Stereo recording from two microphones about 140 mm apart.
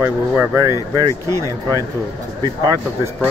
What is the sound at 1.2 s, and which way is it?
Speech, 25° left (ahead or behind).